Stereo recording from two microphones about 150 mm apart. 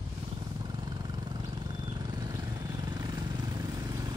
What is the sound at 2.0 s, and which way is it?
Vehicle, 30° right (ahead or behind).